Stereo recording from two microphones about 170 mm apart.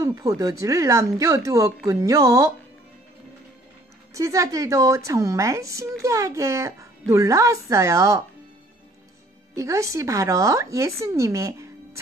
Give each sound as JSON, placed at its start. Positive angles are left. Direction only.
{"t": 0.0, "sound": "a woman's voice", "side_deg": -20}
{"t": 4.1, "sound": "a woman's voice", "side_deg": -20}
{"t": 9.6, "sound": "speech", "side_deg": -20}